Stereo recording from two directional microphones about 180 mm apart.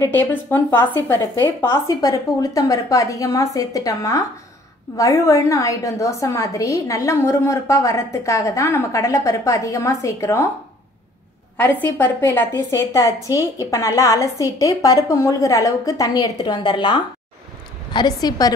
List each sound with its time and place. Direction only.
0.0 s a woman's voice: 10° left (ahead or behind)
12.0 s a woman's voice: 10° left (ahead or behind)